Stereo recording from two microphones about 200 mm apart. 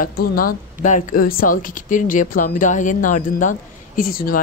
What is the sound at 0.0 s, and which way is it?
Speech, 45° left (ahead or behind).